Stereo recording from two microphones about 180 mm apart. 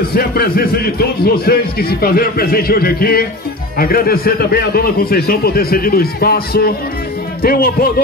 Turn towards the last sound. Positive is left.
turn(degrees=55)  # may be behind; listen again after turning